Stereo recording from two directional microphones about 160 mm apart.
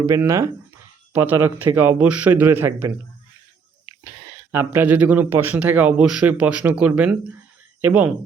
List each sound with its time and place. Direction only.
0.0 s speech: 15° right (ahead or behind)
4.0 s speech: 15° right (ahead or behind)